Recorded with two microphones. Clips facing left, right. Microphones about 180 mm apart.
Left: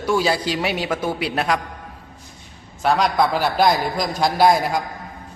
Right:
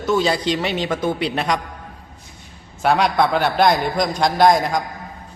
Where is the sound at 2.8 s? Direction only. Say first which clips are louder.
Right 1 dB; centre (ahead or behind).